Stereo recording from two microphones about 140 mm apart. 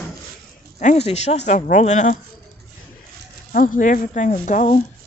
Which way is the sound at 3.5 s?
70° left (ahead or behind).